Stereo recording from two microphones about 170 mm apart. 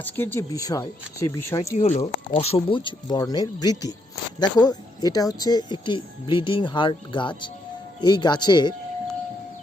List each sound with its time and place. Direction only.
0.0 s speech: 10° left (ahead or behind)
1.8 s speech: 40° left (ahead or behind)